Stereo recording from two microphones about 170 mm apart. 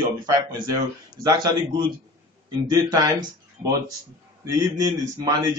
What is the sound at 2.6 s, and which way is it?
Speech, 20° right (ahead or behind).